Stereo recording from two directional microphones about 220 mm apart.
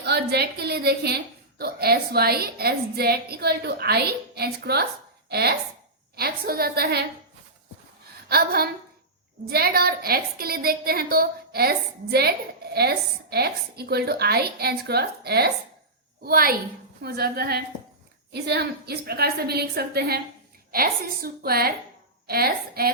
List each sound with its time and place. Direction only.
0.0 s a woman's voice: 50° right (ahead or behind)
8.3 s a woman's voice: 45° right (ahead or behind)
12.7 s a woman's voice: 45° right (ahead or behind)